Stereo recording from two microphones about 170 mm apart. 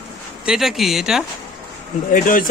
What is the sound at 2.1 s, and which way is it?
Speech, 55° left (ahead or behind).